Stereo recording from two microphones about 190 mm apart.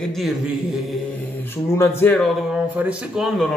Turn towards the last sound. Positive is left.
turn(degrees=0)  # may be behind; listen again after turning